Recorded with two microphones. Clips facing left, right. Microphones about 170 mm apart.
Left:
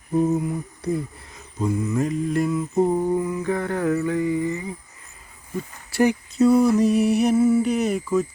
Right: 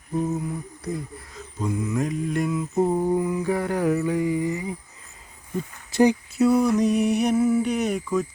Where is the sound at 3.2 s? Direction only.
20° right (ahead or behind).